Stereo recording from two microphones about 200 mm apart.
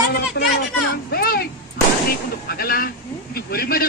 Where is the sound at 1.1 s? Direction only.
50° left (ahead or behind).